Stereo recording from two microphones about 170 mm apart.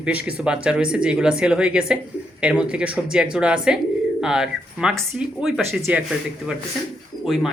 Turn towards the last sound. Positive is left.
turn(degrees=0)  # may be behind; listen again after turning